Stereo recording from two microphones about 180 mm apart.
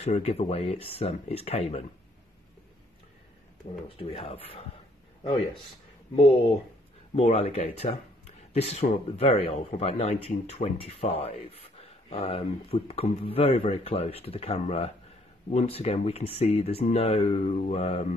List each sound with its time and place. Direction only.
0.0 s speech: 35° left (ahead or behind)
3.9 s a man's voice: 30° left (ahead or behind)
7.2 s speech: 35° left (ahead or behind)